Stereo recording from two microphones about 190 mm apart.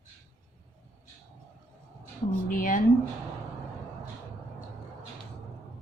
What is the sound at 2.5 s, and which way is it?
Speech, 45° left (ahead or behind).